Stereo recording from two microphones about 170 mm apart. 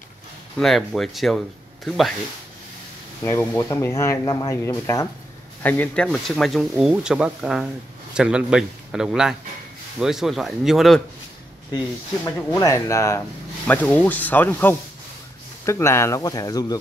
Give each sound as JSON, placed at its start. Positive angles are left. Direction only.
{"t": 0.6, "sound": "speech", "side_deg": 0}
{"t": 3.3, "sound": "speech", "side_deg": 15}
{"t": 12.4, "sound": "speech", "side_deg": 15}